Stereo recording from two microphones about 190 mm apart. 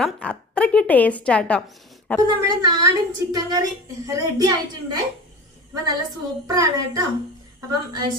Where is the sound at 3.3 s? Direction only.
20° right (ahead or behind).